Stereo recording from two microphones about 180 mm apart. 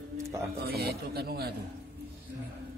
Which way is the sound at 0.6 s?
60° right (ahead or behind).